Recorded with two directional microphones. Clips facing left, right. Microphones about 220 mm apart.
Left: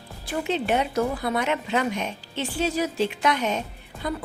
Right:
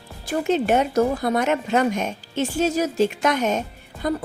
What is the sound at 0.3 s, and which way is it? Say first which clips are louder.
Speech: right 5 dB; 45° right (ahead or behind).